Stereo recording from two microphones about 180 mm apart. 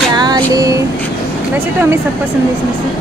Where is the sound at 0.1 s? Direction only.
20° right (ahead or behind).